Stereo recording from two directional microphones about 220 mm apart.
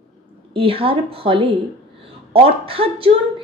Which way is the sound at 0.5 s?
25° right (ahead or behind).